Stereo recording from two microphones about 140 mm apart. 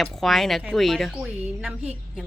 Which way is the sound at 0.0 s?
Centre (ahead or behind).